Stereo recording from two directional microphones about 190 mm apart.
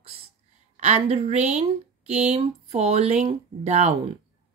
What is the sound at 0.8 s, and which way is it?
Speech, 35° right (ahead or behind).